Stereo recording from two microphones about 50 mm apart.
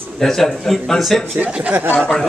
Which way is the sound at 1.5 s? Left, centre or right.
Right.